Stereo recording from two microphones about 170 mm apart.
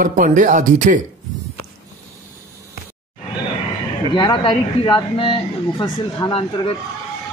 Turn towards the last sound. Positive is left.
turn(degrees=30)  # may be behind; listen again after turning